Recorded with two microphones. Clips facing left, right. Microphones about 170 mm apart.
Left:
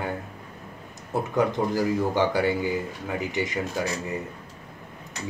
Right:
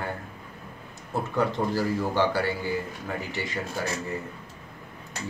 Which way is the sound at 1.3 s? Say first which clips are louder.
Left 2 dB; 20° left (ahead or behind).